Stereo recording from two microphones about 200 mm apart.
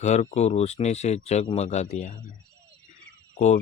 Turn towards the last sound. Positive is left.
turn(degrees=35)  # may be behind; listen again after turning